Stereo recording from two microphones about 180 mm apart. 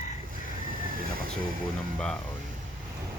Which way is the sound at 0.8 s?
50° right (ahead or behind).